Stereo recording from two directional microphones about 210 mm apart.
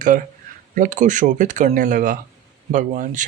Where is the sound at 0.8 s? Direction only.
40° right (ahead or behind).